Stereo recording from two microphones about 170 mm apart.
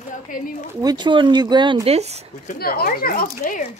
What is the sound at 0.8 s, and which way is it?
Speech, 25° right (ahead or behind).